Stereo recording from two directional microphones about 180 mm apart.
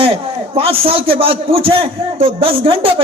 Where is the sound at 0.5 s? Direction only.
30° right (ahead or behind).